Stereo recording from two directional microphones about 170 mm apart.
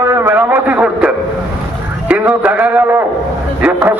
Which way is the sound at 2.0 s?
10° right (ahead or behind).